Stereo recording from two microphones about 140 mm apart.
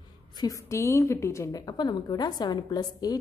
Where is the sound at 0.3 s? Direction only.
25° left (ahead or behind).